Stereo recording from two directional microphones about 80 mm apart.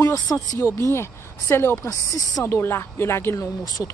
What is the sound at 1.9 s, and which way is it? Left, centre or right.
Speech, left.